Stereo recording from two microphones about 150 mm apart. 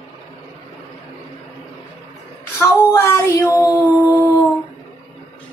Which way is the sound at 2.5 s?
20° left (ahead or behind).